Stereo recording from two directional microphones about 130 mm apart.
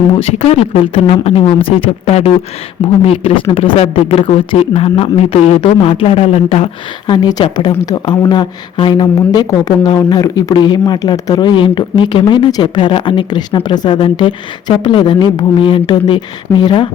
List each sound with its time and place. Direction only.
0.2 s speech: 50° left (ahead or behind)
7.1 s speech: 35° left (ahead or behind)